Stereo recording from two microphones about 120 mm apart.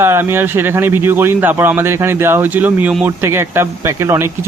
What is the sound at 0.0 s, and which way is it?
Speech, 20° right (ahead or behind).